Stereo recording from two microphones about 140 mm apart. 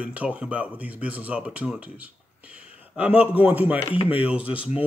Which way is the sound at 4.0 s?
40° left (ahead or behind).